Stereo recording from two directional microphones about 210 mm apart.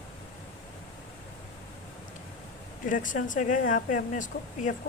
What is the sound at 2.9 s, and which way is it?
Speech, 40° left (ahead or behind).